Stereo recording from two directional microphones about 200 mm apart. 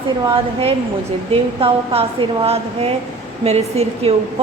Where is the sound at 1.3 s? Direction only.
30° right (ahead or behind).